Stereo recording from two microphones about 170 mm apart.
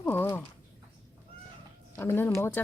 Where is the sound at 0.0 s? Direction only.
15° left (ahead or behind).